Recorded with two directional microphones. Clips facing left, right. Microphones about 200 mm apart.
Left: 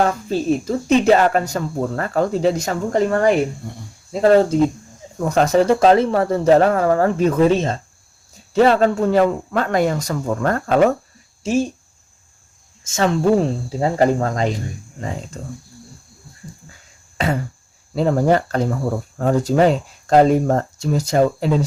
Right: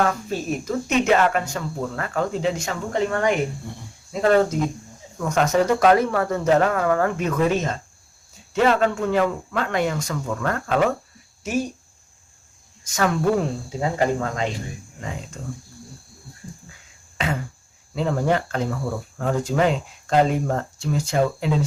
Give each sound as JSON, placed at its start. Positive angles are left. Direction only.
{"t": 0.0, "sound": "speech", "side_deg": 30}
{"t": 11.4, "sound": "speech", "side_deg": 25}
{"t": 12.8, "sound": "speech", "side_deg": 25}
{"t": 17.2, "sound": "a sound", "side_deg": 40}
{"t": 17.9, "sound": "speech", "side_deg": 40}